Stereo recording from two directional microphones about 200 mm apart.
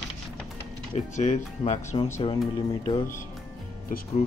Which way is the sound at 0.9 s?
35° left (ahead or behind).